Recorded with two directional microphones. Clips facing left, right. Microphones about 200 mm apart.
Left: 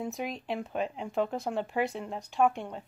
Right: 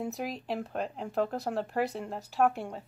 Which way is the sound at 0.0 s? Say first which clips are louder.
Even; centre (ahead or behind).